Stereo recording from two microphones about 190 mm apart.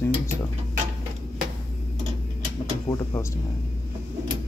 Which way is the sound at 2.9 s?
25° left (ahead or behind).